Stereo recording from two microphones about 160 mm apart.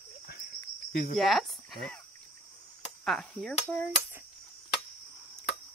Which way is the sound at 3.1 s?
Centre (ahead or behind).